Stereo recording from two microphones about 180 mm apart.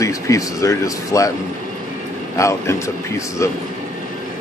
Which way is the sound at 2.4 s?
15° left (ahead or behind).